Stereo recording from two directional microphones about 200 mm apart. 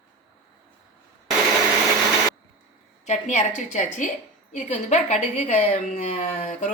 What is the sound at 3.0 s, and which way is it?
A woman's voice, 35° left (ahead or behind).